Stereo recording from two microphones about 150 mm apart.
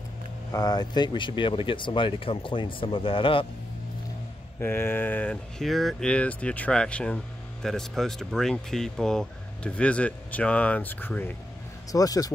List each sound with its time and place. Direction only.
0.5 s speech: 25° left (ahead or behind)
4.6 s speech: 15° left (ahead or behind)
11.9 s speech: 25° left (ahead or behind)